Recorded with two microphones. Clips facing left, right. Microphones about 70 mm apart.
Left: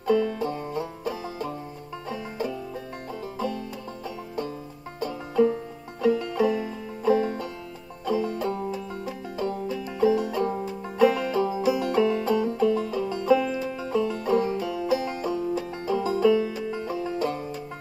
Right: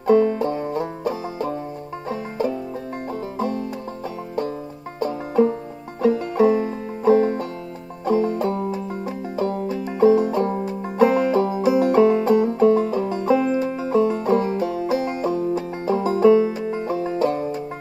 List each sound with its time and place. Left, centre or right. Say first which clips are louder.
0.0 s banjo: right 7 dB; right
2.0 s music: right 7 dB; right
5.0 s banjo: right 4 dB; right
6.0 s music: right 5 dB; right
8.0 s banjo: right 6 dB; right
8.5 s music: right 5 dB; right
10.6 s banjo: right 1 dB; right